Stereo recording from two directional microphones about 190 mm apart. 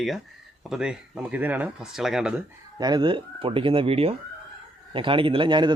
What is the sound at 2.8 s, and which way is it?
Speech, 20° right (ahead or behind).